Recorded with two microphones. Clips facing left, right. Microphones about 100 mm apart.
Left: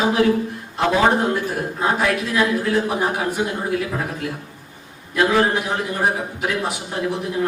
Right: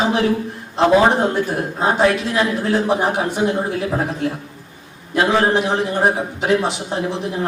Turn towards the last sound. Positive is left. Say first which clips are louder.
# right 2 dB
turn(degrees=-25)  # may be behind; listen again after turning